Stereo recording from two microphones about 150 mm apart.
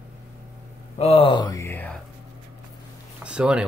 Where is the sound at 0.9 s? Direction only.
40° left (ahead or behind); by 1.9 s 20° left (ahead or behind).